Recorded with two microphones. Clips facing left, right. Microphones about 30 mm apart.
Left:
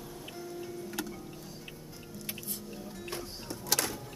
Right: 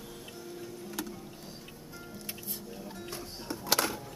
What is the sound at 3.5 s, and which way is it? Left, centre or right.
Music, right.